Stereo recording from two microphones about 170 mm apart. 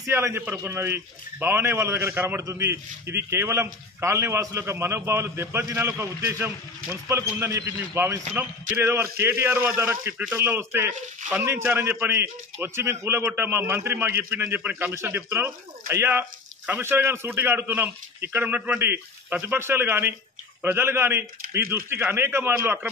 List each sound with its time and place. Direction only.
0.0 s a man's voice: 15° right (ahead or behind)